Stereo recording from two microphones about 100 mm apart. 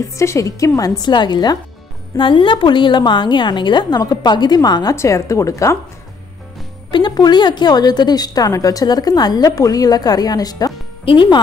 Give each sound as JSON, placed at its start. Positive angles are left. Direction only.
{"t": 0.0, "sound": "a woman's voice", "side_deg": 30}
{"t": 2.1, "sound": "a woman's voice", "side_deg": 55}
{"t": 6.9, "sound": "a woman's voice", "side_deg": 50}
{"t": 11.1, "sound": "speech", "side_deg": 55}